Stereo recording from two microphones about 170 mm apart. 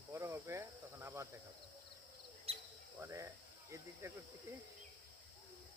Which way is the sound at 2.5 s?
35° right (ahead or behind).